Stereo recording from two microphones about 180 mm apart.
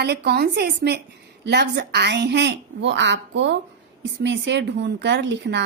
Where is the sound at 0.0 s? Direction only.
65° right (ahead or behind).